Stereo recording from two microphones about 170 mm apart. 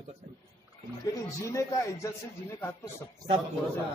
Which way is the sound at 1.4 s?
20° left (ahead or behind).